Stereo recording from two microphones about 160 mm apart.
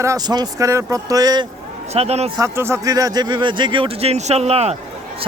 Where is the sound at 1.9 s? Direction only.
40° right (ahead or behind).